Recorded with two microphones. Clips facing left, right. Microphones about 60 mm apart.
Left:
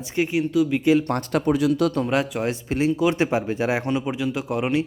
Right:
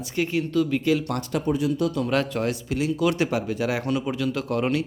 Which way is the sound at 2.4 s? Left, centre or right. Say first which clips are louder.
Left 3 dB; left.